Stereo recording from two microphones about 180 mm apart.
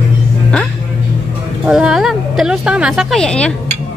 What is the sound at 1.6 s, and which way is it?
A woman's voice, 5° right (ahead or behind).